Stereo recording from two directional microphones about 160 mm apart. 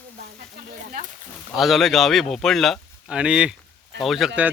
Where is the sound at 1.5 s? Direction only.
Centre (ahead or behind).